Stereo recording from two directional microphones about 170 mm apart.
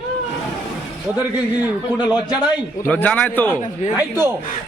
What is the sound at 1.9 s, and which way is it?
Speech, 10° right (ahead or behind).